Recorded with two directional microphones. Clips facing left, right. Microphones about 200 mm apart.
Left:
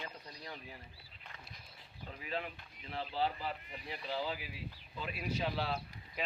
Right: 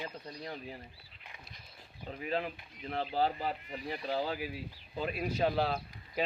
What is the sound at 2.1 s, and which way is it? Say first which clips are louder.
Speech: right 6 dB; 40° right (ahead or behind).